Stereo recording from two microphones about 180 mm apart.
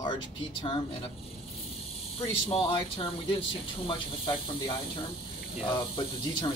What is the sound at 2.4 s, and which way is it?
Speech, 30° left (ahead or behind).